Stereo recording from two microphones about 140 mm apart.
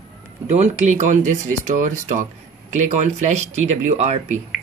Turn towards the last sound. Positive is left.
turn(degrees=-50)  # may be behind; listen again after turning